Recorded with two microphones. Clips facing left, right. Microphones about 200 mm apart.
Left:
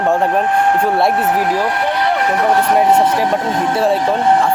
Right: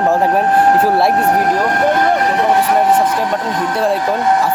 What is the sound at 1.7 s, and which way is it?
Vehicle, 45° right (ahead or behind).